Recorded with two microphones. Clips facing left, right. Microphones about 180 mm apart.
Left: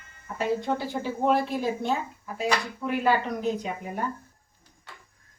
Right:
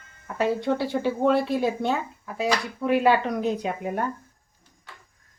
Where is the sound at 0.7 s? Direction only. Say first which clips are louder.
Right 5 dB; 70° right (ahead or behind).